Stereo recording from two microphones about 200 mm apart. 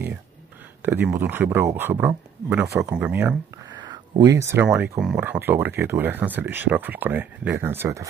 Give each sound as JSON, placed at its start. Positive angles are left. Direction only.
{"t": 0.8, "sound": "speech", "side_deg": -10}
{"t": 3.6, "sound": "a sound", "side_deg": -20}
{"t": 4.9, "sound": "speech", "side_deg": -5}